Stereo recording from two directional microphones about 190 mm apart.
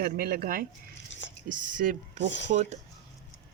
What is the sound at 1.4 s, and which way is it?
Speech, 45° right (ahead or behind).